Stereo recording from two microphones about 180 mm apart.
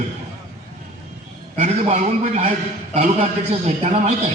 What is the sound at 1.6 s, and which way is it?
Speech, 35° right (ahead or behind).